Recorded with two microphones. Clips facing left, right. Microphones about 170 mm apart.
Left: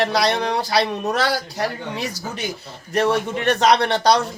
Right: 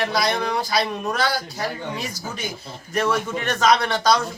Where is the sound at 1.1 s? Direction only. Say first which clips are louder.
Left 2 dB; 75° left (ahead or behind).